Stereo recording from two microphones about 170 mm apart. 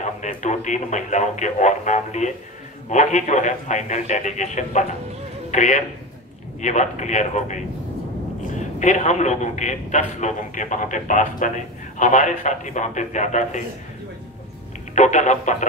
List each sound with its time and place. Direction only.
0.0 s a man's voice: 45° left (ahead or behind)
8.7 s a man's voice: 45° left (ahead or behind)
15.0 s a man's voice: 45° left (ahead or behind)